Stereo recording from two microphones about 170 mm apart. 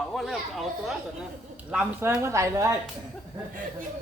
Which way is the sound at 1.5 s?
5° right (ahead or behind).